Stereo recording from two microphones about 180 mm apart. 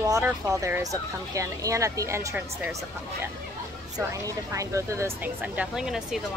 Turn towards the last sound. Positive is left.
turn(degrees=-5)  # may be behind; listen again after turning